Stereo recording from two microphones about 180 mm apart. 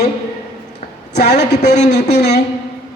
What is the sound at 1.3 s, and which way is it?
A woman's voice, 65° left (ahead or behind).